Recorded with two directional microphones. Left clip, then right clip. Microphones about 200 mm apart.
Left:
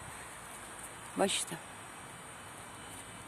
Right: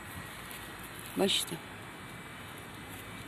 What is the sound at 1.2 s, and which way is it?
Speech, 10° left (ahead or behind).